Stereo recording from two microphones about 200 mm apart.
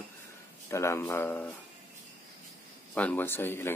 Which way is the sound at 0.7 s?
15° left (ahead or behind).